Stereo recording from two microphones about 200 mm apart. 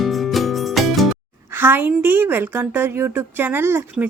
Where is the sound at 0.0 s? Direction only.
Centre (ahead or behind).